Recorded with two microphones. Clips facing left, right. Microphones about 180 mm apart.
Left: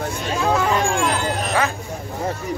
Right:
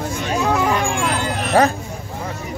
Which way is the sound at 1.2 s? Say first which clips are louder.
Even; 40° left (ahead or behind).